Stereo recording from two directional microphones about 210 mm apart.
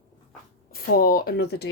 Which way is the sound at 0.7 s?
45° left (ahead or behind).